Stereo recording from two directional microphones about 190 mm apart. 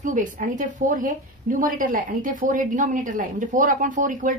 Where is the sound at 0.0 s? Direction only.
40° right (ahead or behind).